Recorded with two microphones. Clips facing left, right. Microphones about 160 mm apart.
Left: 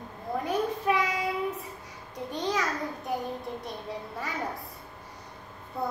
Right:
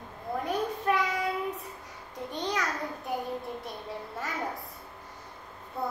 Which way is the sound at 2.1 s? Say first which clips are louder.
Left 2 dB; centre (ahead or behind).